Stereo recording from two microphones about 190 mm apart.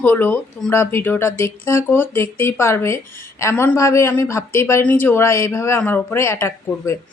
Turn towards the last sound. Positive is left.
turn(degrees=15)  # may be behind; listen again after turning